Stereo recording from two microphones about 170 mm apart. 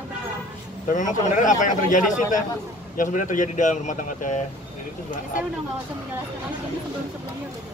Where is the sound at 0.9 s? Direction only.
50° left (ahead or behind).